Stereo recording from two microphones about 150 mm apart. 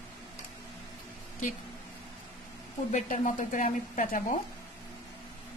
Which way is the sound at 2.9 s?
55° left (ahead or behind).